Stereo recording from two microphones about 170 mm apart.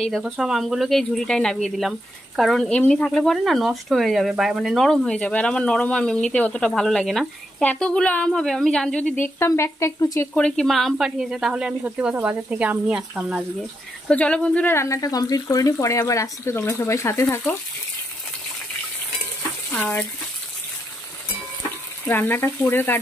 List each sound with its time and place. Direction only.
0.0 s speech: centre (ahead or behind)
9.4 s speech: 15° left (ahead or behind)
10.3 s speech: 5° left (ahead or behind)
14.0 s speech: 5° left (ahead or behind)
19.7 s speech: 10° left (ahead or behind)
22.0 s speech: 10° left (ahead or behind)